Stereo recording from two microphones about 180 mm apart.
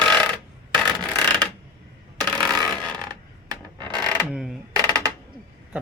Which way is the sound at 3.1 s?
25° right (ahead or behind).